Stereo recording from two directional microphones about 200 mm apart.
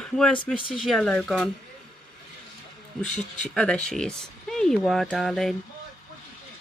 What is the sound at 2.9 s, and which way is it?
Speech, 5° left (ahead or behind).